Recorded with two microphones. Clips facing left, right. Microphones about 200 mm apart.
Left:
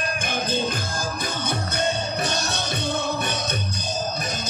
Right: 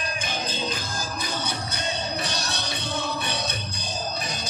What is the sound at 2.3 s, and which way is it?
Music, 50° left (ahead or behind).